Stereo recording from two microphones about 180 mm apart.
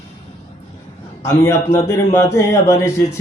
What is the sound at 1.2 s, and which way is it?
A man's voice, 15° left (ahead or behind).